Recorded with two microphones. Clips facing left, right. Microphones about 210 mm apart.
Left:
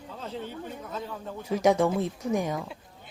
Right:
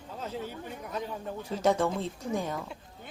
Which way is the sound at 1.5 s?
10° left (ahead or behind).